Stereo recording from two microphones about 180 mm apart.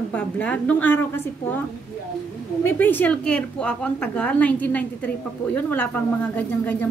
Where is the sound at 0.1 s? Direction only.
10° left (ahead or behind).